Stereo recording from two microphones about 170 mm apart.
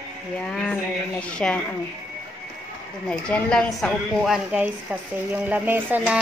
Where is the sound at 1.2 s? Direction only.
5° left (ahead or behind).